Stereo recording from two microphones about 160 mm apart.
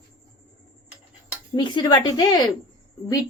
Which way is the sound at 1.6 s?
30° left (ahead or behind).